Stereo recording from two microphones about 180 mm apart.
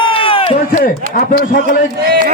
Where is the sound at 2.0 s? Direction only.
60° right (ahead or behind).